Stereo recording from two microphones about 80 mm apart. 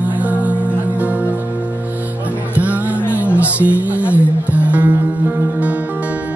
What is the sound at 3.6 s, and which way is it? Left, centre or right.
Music, centre.